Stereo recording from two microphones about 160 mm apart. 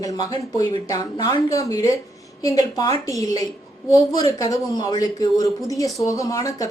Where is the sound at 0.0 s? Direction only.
20° left (ahead or behind).